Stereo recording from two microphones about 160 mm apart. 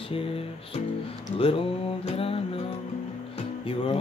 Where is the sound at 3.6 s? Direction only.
35° left (ahead or behind).